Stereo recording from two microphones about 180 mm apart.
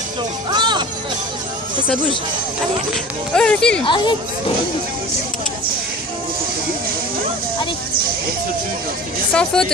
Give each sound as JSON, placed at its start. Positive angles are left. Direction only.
{"t": 0.5, "sound": "music", "side_deg": -25}
{"t": 2.9, "sound": "speech", "side_deg": 5}
{"t": 3.8, "sound": "speech", "side_deg": 25}
{"t": 9.3, "sound": "speech", "side_deg": 5}